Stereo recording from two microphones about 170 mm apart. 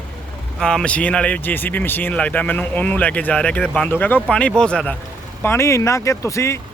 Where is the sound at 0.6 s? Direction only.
5° left (ahead or behind).